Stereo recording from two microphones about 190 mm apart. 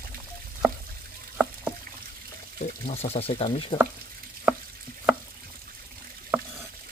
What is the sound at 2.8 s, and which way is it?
Speech, 30° left (ahead or behind).